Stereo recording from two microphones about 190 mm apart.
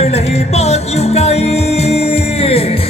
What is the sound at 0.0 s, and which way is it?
Music, 35° left (ahead or behind).